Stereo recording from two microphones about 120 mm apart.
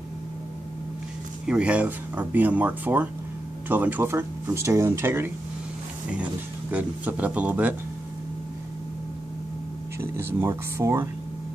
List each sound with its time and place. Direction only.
1.4 s speech: 10° right (ahead or behind)
6.7 s speech: 15° right (ahead or behind)
10.1 s speech: 20° right (ahead or behind)